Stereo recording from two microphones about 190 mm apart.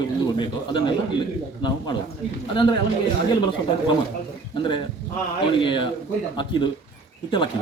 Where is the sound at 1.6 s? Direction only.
25° left (ahead or behind).